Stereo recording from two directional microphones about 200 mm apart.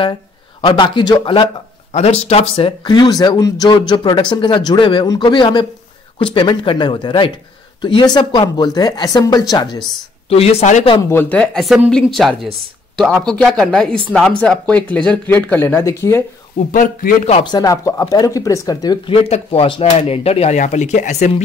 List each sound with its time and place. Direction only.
0.6 s speech: 25° left (ahead or behind)
10.3 s speech: 30° left (ahead or behind)
11.0 s speech: 10° left (ahead or behind)
16.7 s speech: 40° left (ahead or behind)
17.4 s speech: 20° left (ahead or behind)
19.1 s speech: 30° left (ahead or behind)